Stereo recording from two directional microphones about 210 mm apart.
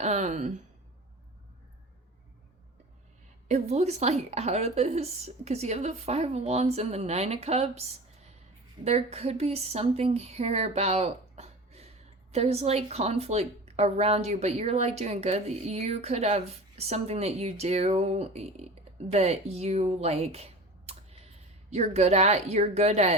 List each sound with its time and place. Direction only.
0.0 s a woman's voice: 35° right (ahead or behind)
3.5 s a woman's voice: 30° right (ahead or behind)